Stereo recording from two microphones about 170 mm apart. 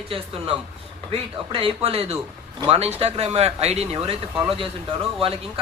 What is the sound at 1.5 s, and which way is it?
Speech, 35° right (ahead or behind).